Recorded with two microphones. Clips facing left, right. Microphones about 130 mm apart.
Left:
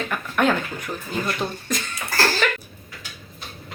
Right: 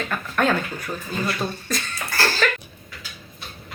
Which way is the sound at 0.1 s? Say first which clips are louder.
Left 1 dB; 15° left (ahead or behind).